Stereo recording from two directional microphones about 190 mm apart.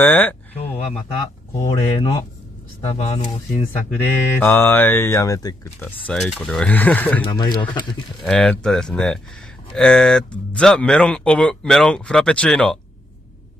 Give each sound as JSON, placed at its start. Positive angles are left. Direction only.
{"t": 0.0, "sound": "speech", "side_deg": 10}
{"t": 1.7, "sound": "speech", "side_deg": 30}
{"t": 3.9, "sound": "speech", "side_deg": 10}
{"t": 6.0, "sound": "speech", "side_deg": 0}
{"t": 7.2, "sound": "speech", "side_deg": 20}
{"t": 8.2, "sound": "speech", "side_deg": 0}